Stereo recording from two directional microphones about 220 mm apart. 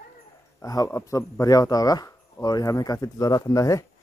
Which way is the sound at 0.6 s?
15° left (ahead or behind).